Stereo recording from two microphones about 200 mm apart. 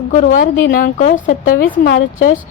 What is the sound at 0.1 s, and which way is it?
A woman's voice, 40° left (ahead or behind).